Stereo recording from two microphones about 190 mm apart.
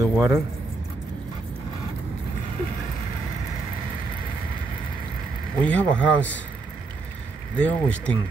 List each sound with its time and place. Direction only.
0.0 s a sound: 15° right (ahead or behind)
5.6 s speech: 5° left (ahead or behind)
7.5 s speech: 5° left (ahead or behind)